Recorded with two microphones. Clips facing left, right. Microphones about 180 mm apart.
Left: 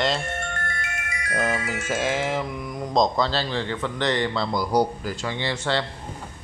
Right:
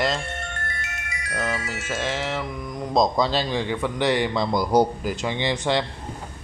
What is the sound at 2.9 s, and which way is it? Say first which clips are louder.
A man's voice: right 1 dB; 10° right (ahead or behind).